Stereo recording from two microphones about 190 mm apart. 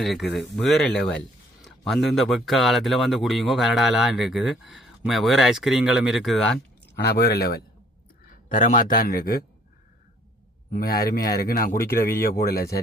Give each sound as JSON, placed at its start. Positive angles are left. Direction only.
{"t": 0.0, "sound": "a man's voice", "side_deg": 0}
{"t": 7.0, "sound": "speech", "side_deg": 55}
{"t": 8.4, "sound": "speech", "side_deg": 45}
{"t": 10.7, "sound": "speech", "side_deg": 50}